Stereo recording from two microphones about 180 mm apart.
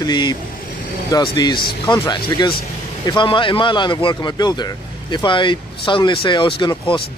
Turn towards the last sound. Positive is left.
turn(degrees=30)  # may be behind; listen again after turning